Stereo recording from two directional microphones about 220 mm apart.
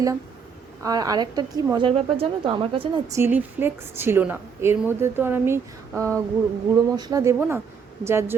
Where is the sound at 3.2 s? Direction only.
10° right (ahead or behind).